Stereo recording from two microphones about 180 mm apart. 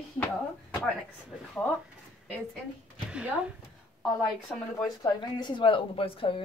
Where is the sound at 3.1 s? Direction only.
5° right (ahead or behind).